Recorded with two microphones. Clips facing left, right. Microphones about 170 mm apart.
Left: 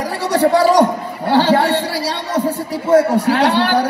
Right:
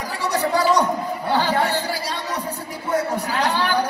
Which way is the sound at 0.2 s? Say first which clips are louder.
Left 7 dB; 65° left (ahead or behind).